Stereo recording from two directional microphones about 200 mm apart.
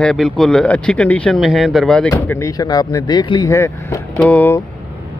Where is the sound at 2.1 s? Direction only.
15° left (ahead or behind).